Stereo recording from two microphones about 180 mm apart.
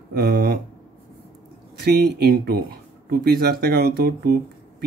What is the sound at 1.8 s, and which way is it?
Speech, 65° right (ahead or behind).